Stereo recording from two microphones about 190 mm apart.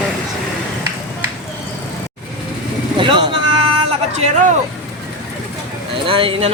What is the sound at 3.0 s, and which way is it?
Vehicle, 25° right (ahead or behind).